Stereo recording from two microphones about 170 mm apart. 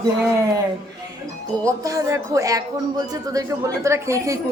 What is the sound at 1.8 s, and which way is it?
A woman's voice, 20° right (ahead or behind).